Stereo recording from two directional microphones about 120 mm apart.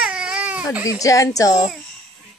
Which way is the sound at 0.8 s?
30° left (ahead or behind).